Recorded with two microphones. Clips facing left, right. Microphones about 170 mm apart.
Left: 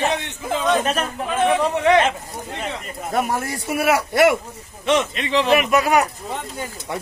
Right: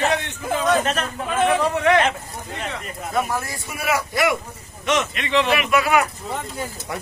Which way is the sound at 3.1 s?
65° left (ahead or behind).